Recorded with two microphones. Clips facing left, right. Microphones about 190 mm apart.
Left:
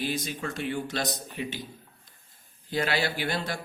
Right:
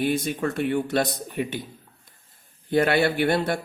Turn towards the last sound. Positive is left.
turn(degrees=-60)  # may be behind; listen again after turning